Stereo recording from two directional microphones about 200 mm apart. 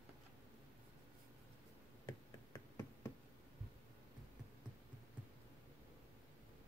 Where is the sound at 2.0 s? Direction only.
20° left (ahead or behind).